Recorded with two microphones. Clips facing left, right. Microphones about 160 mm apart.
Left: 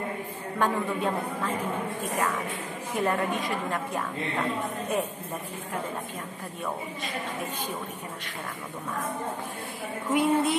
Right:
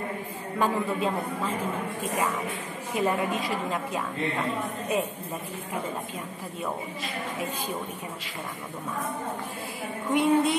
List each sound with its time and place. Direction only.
0.6 s a woman's voice: 10° right (ahead or behind)
3.0 s a woman's voice: 5° right (ahead or behind)
10.0 s a woman's voice: centre (ahead or behind)